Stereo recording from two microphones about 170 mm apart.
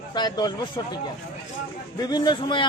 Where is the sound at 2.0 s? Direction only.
25° left (ahead or behind).